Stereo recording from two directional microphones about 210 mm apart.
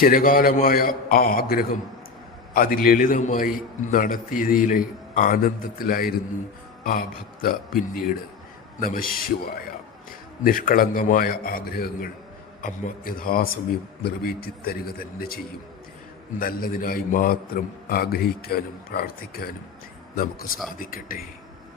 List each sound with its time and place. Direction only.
0.0 s a man's voice: 45° left (ahead or behind)
16.4 s a man's voice: 45° left (ahead or behind)